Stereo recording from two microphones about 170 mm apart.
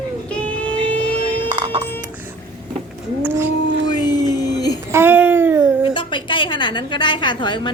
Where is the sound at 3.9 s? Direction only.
25° left (ahead or behind).